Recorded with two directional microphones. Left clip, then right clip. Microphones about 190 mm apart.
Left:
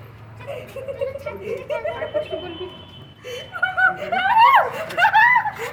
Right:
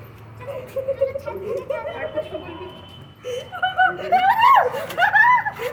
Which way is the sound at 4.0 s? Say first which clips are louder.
Right 4 dB; 10° right (ahead or behind).